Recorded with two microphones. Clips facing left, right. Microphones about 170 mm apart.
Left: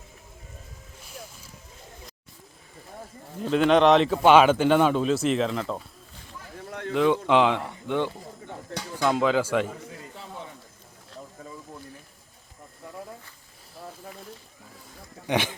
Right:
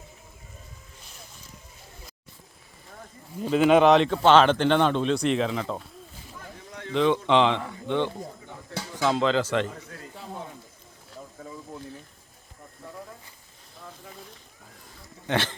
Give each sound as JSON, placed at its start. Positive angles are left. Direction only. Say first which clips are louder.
{"t": 3.4, "sound": "speech", "louder": "right 1 dB", "side_deg": -5}
{"t": 6.7, "sound": "a sound", "louder": "left 7 dB", "side_deg": 55}
{"t": 6.9, "sound": "speech", "louder": "even", "side_deg": 10}
{"t": 8.7, "sound": "dishes", "louder": "even", "side_deg": -5}
{"t": 9.1, "sound": "speech", "louder": "left 1 dB", "side_deg": 10}
{"t": 11.1, "sound": "a sound", "louder": "right 1 dB", "side_deg": -5}
{"t": 15.3, "sound": "speech", "louder": "left 1 dB", "side_deg": 15}